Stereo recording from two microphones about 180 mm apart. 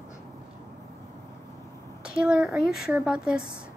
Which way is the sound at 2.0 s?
5° right (ahead or behind).